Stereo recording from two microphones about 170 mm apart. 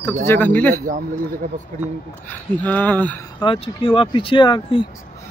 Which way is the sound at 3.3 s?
30° left (ahead or behind).